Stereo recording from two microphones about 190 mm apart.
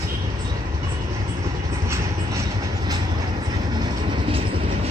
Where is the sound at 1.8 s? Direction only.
15° right (ahead or behind).